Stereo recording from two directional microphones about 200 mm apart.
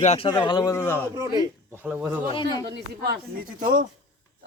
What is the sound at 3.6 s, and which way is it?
Speech, 40° right (ahead or behind).